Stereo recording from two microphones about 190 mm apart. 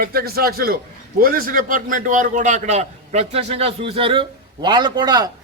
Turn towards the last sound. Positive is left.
turn(degrees=-20)  # may be behind; listen again after turning